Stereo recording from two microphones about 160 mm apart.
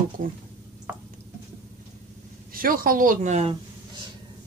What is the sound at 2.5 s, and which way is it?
Speech, 65° right (ahead or behind).